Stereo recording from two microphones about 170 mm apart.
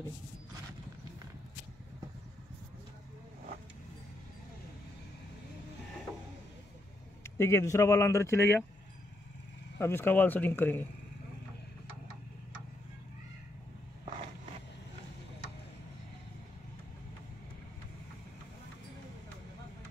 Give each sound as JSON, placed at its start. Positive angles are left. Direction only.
{"t": 7.2, "sound": "speech", "side_deg": 15}
{"t": 9.8, "sound": "speech", "side_deg": 15}